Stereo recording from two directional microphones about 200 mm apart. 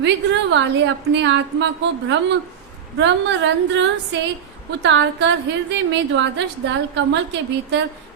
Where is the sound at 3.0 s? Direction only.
65° right (ahead or behind).